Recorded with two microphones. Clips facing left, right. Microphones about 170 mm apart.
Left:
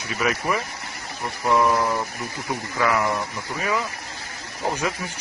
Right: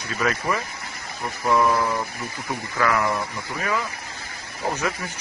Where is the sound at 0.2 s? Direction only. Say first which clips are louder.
Even; 15° left (ahead or behind).